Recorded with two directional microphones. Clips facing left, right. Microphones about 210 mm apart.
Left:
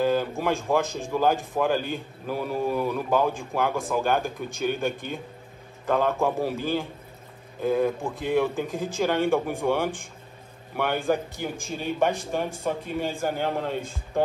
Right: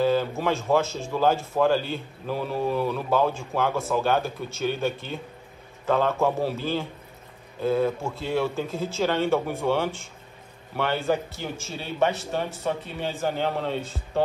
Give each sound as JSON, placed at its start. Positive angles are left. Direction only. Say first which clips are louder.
{"t": 0.0, "sound": "a man's voice", "louder": "right 1 dB", "side_deg": 15}